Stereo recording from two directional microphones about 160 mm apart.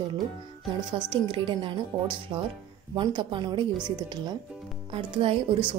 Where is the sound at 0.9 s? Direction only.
35° right (ahead or behind).